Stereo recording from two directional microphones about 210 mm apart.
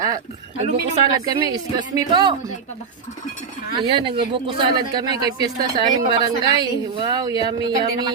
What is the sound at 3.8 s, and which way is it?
Speech, 25° right (ahead or behind).